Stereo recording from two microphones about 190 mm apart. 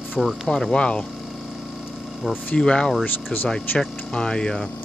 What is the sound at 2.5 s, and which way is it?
Speech, 5° left (ahead or behind).